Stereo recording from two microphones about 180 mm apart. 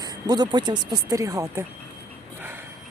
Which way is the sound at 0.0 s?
20° right (ahead or behind).